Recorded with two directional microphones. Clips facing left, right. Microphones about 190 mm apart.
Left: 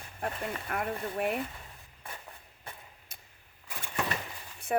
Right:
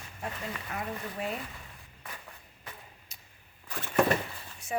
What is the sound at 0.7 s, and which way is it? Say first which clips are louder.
Speech: left 4 dB; 55° left (ahead or behind).